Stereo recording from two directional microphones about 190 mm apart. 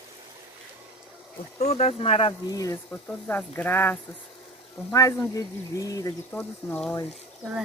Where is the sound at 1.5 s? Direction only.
35° left (ahead or behind); by 7.0 s 10° left (ahead or behind).